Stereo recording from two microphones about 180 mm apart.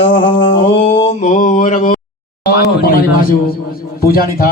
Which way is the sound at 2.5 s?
55° left (ahead or behind).